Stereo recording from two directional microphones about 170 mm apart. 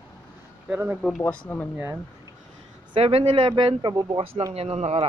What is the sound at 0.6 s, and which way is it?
Speech, 10° right (ahead or behind).